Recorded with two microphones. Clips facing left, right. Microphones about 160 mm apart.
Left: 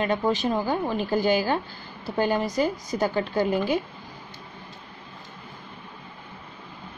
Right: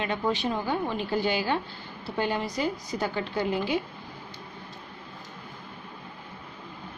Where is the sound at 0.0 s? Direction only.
40° left (ahead or behind).